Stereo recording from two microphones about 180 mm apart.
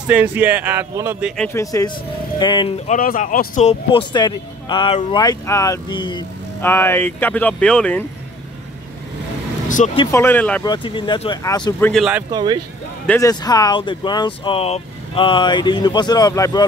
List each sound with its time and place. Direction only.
0.1 s speech: 10° right (ahead or behind)
1.5 s speech: 20° left (ahead or behind)
2.9 s speech: 50° left (ahead or behind)
4.1 s speech: 25° left (ahead or behind)
6.6 s speech: 10° left (ahead or behind)
9.8 s speech: 40° left (ahead or behind)
10.1 s speech: 10° left (ahead or behind)
10.6 s speech: 25° left (ahead or behind)
11.8 s speech: centre (ahead or behind)
12.3 s speech: 25° right (ahead or behind)
13.2 s speech: 20° left (ahead or behind)